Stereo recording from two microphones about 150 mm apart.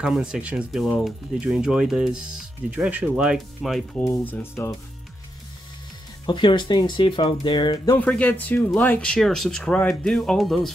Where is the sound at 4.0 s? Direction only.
15° left (ahead or behind).